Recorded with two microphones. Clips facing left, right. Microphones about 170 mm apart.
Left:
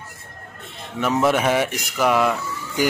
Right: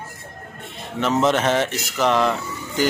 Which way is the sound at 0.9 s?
10° left (ahead or behind).